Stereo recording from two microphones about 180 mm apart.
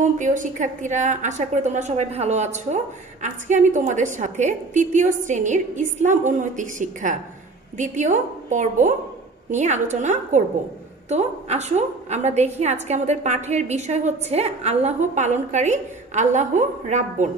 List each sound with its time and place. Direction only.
0.0 s a woman's voice: 45° right (ahead or behind)